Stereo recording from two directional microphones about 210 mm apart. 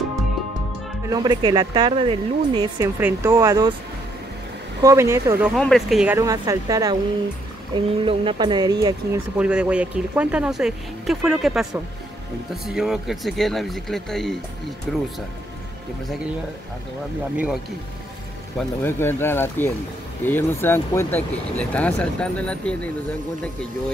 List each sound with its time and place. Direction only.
1.0 s a woman's voice: 20° right (ahead or behind)
4.8 s a woman's voice: 15° right (ahead or behind)
5.6 s speech: centre (ahead or behind)
6.1 s a woman's voice: 15° right (ahead or behind)
9.4 s speech: 5° right (ahead or behind)
18.6 s speech: 10° left (ahead or behind)